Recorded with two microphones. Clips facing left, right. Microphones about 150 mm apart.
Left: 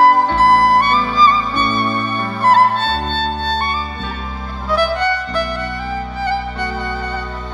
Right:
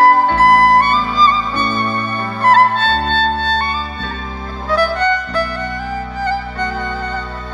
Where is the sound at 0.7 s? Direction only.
10° left (ahead or behind).